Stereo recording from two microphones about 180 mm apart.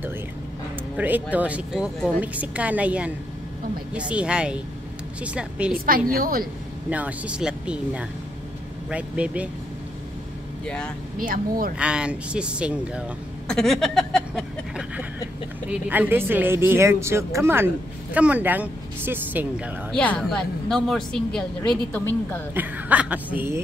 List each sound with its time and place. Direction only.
0.9 s a woman's voice: 10° right (ahead or behind)
5.9 s a woman's voice: 55° right (ahead or behind)
6.9 s a woman's voice: 10° right (ahead or behind)
10.6 s speech: 5° left (ahead or behind)
11.1 s a woman's voice: 50° right (ahead or behind)
11.8 s a woman's voice: 5° right (ahead or behind)
19.9 s speech: 5° left (ahead or behind)
22.5 s a woman's voice: 10° right (ahead or behind)